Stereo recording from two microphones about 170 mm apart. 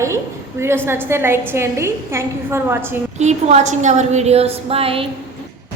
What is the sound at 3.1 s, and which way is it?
A woman's voice, 45° right (ahead or behind).